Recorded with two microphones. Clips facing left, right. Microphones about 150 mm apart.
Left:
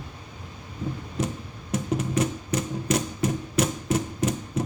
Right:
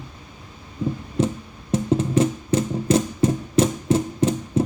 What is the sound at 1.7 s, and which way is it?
Music, 25° right (ahead or behind).